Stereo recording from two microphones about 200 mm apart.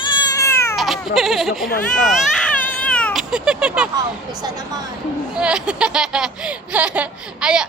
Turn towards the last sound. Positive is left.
turn(degrees=-5)  # may be behind; listen again after turning